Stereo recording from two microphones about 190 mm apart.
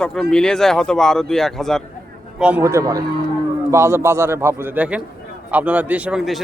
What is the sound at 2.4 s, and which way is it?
A man's voice, 10° right (ahead or behind).